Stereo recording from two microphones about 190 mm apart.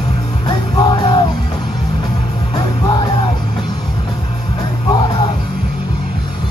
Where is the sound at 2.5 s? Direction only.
20° left (ahead or behind).